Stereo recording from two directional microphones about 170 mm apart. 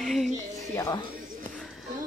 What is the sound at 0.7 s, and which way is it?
Speech, 20° left (ahead or behind).